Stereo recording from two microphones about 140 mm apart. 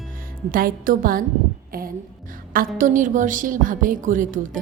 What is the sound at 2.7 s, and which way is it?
Speech, 70° right (ahead or behind).